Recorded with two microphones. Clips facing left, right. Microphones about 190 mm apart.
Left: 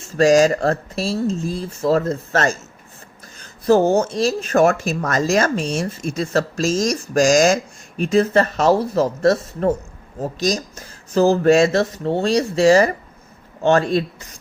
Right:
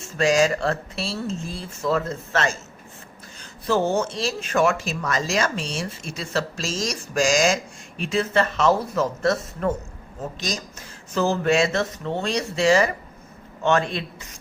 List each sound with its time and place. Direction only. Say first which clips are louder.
0.2 s speech: left 6 dB; 40° left (ahead or behind)